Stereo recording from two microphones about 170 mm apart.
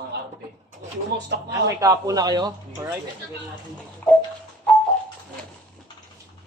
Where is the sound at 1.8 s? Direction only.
20° right (ahead or behind).